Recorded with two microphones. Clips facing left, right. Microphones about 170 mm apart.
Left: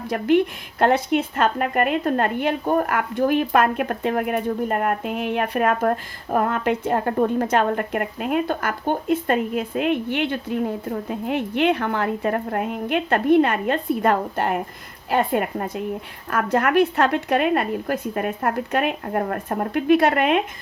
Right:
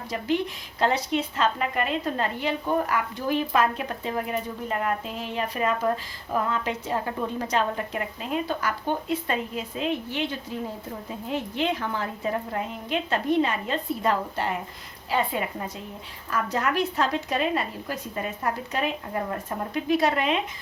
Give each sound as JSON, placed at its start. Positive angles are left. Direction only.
{"t": 0.1, "sound": "speech", "side_deg": 60}